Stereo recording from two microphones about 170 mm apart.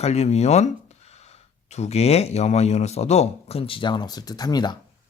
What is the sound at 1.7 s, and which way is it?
Speech, 40° left (ahead or behind).